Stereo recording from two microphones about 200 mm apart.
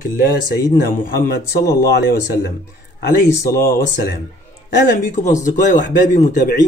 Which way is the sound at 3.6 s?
45° left (ahead or behind).